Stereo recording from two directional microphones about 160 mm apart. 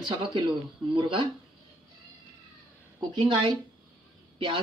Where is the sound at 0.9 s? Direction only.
30° right (ahead or behind).